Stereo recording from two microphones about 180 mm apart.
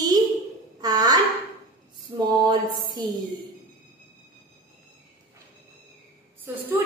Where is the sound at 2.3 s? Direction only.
25° right (ahead or behind).